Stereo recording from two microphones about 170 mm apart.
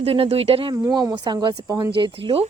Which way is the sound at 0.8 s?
20° right (ahead or behind).